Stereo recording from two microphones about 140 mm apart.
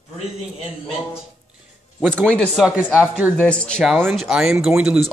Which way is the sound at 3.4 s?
5° left (ahead or behind).